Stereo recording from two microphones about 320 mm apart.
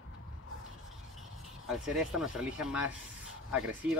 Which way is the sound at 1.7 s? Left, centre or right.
Centre.